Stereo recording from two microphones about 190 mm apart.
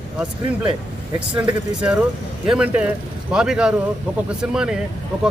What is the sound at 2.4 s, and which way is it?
Speech, 5° right (ahead or behind).